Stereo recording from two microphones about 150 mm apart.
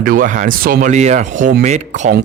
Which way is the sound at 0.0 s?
65° right (ahead or behind).